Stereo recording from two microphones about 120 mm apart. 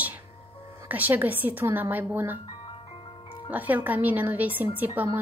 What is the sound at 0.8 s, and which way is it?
Speech, 15° right (ahead or behind).